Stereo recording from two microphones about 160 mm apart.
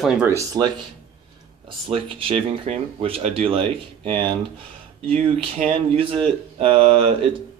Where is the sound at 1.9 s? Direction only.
35° right (ahead or behind).